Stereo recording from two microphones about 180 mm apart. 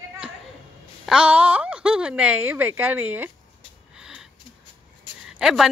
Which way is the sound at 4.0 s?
5° right (ahead or behind).